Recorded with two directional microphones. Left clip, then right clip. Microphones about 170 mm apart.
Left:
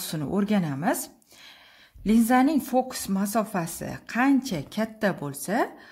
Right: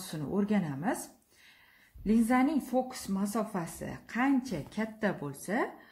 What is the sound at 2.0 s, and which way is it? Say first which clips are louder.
Speech: left 7 dB; 40° left (ahead or behind).